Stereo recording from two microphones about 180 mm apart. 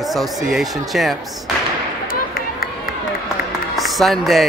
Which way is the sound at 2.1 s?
55° left (ahead or behind).